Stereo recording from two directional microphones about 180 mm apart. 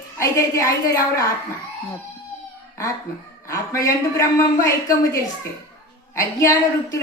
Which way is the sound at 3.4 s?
15° left (ahead or behind).